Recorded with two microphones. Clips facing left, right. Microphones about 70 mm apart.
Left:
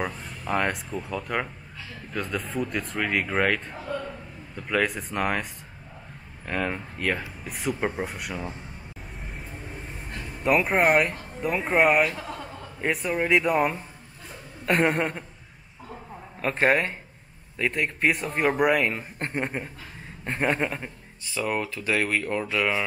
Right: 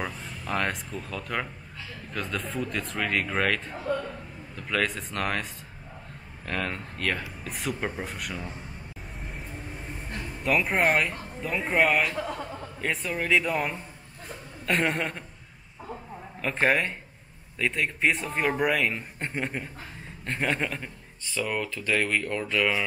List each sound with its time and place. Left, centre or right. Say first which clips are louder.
0.0 s a man's voice: left 3 dB; centre
10.0 s a sound: right 2 dB; centre
10.4 s a man's voice: left 3 dB; centre
12.2 s a man's voice: right 4 dB; right
12.9 s a man's voice: left 3 dB; centre
14.7 s a woman's voice: left 4 dB; centre
16.3 s a man's voice: left 2 dB; centre
21.5 s speech: left 2 dB; left